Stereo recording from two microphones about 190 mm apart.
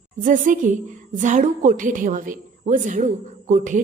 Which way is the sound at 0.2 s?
45° right (ahead or behind).